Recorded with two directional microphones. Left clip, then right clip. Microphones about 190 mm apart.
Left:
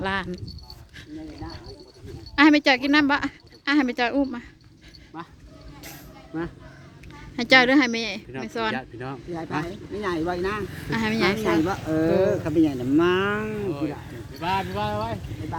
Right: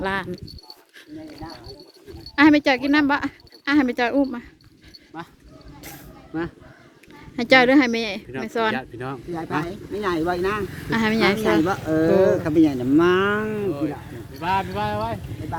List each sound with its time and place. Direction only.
0.0 s a woman's voice: 5° right (ahead or behind)
2.3 s a woman's voice: centre (ahead or behind)
5.1 s speech: 15° right (ahead or behind)
5.8 s a sound: 20° right (ahead or behind)
7.3 s speech: 5° right (ahead or behind)
10.8 s speech: 20° right (ahead or behind)
12.5 s speech: 45° right (ahead or behind)
13.1 s speech: 35° right (ahead or behind)
14.3 s speech: 30° left (ahead or behind)